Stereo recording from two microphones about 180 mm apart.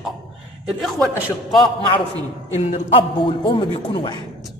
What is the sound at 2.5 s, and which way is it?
A man's voice, 40° left (ahead or behind).